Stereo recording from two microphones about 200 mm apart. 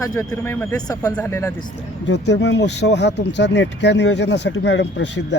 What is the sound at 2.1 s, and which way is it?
Speech, 65° left (ahead or behind).